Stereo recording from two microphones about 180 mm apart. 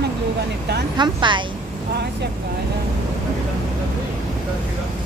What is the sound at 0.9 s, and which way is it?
Speech, 25° right (ahead or behind).